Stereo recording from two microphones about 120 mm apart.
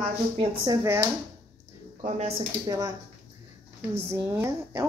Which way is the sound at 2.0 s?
65° right (ahead or behind).